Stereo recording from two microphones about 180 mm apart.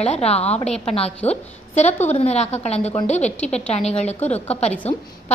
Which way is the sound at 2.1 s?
40° left (ahead or behind).